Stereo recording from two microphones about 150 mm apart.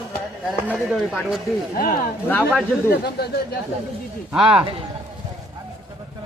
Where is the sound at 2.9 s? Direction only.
90° left.